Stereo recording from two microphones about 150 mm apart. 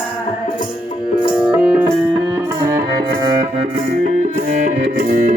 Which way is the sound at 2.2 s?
25° right (ahead or behind).